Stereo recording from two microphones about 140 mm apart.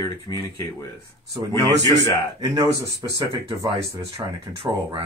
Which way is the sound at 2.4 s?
25° right (ahead or behind).